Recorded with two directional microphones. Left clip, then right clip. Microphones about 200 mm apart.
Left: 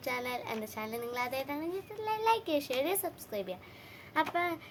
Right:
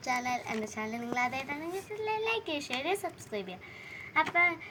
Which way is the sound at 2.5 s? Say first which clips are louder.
Left 1 dB; 30° left (ahead or behind).